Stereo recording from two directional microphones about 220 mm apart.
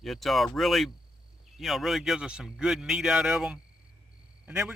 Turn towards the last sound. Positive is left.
turn(degrees=-5)  # may be behind; listen again after turning